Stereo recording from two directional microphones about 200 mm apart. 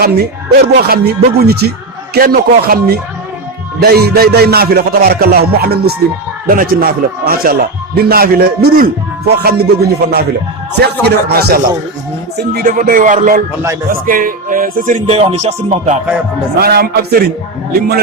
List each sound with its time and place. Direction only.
0.5 s music: 50° right (ahead or behind); by 16.0 s 35° right (ahead or behind)
16.6 s music: 50° right (ahead or behind)